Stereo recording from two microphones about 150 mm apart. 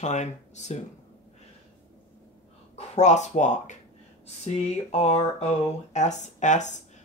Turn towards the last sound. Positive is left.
turn(degrees=55)  # may be behind; listen again after turning